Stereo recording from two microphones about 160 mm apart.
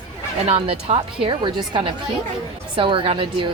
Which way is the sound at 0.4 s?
45° right (ahead or behind).